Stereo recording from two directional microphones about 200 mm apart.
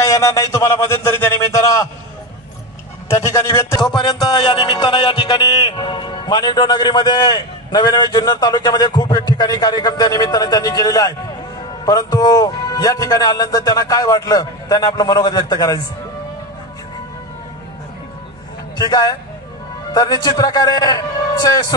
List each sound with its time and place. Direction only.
0.0 s a man's voice: 15° left (ahead or behind)
3.1 s a man's voice: 15° left (ahead or behind)
18.8 s a man's voice: 20° left (ahead or behind)